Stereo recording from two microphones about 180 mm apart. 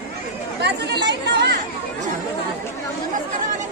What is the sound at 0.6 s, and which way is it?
Speech, 70° right (ahead or behind).